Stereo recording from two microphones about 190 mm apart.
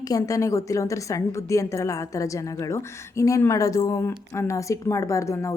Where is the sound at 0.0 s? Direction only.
20° left (ahead or behind).